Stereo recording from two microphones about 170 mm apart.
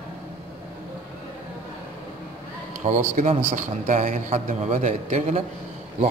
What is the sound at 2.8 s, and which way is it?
Speech, 35° right (ahead or behind).